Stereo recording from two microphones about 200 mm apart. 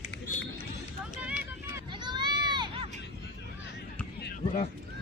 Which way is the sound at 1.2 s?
5° right (ahead or behind).